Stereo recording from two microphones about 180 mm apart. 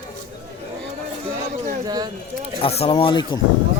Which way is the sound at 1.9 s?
20° right (ahead or behind).